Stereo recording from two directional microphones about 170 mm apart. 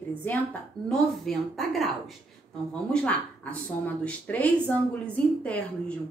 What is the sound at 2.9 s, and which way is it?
A woman's voice, 5° left (ahead or behind).